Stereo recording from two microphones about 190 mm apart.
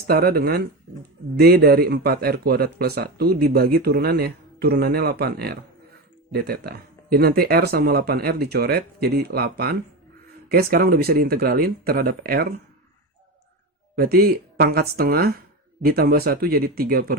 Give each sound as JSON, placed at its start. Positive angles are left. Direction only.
{"t": 0.1, "sound": "speech", "side_deg": -55}
{"t": 13.9, "sound": "speech", "side_deg": -50}